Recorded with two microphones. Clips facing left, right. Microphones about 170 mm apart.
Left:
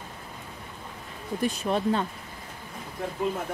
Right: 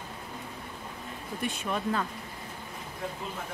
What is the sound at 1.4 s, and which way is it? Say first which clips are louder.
Speech: left 6 dB; 40° left (ahead or behind).